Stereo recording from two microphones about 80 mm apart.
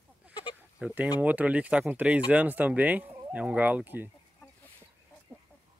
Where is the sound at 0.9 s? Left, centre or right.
Centre.